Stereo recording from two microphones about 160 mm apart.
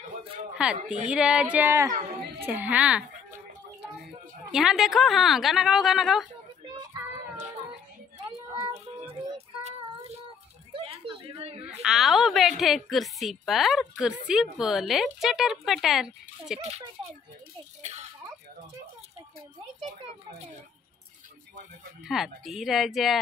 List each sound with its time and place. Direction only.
0.6 s a woman's voice: 5° right (ahead or behind)
4.5 s a woman's voice: centre (ahead or behind)
9.6 s child singing: 45° right (ahead or behind)
10.7 s a sound: 35° right (ahead or behind)
11.8 s a woman's voice: centre (ahead or behind)
16.5 s a child's voice: 40° right (ahead or behind)
22.0 s a woman's voice: centre (ahead or behind)